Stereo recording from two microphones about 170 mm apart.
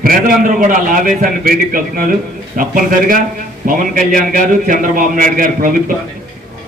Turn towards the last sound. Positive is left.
turn(degrees=-55)  # may be behind; listen again after turning